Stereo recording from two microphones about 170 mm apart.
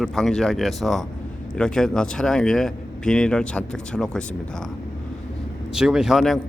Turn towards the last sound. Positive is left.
turn(degrees=0)  # may be behind; listen again after turning